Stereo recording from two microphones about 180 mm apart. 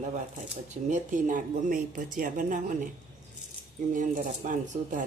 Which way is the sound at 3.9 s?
45° right (ahead or behind).